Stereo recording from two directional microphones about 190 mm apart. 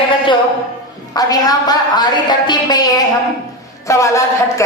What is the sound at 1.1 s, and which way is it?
A woman's voice, 20° left (ahead or behind).